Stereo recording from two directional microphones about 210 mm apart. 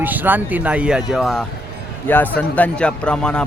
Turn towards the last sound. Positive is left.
turn(degrees=5)  # may be behind; listen again after turning